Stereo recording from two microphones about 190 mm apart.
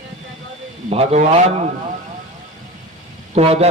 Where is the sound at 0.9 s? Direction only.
35° right (ahead or behind).